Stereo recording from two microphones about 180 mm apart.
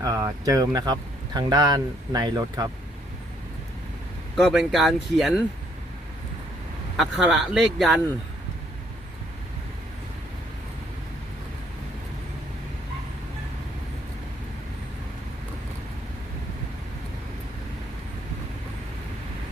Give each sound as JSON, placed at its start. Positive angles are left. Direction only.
{"t": 0.0, "sound": "speech", "side_deg": -20}
{"t": 4.4, "sound": "speech", "side_deg": 0}
{"t": 6.9, "sound": "speech", "side_deg": 0}